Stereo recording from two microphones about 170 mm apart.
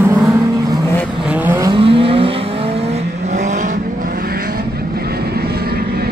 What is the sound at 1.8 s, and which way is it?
Vehicle, 35° right (ahead or behind).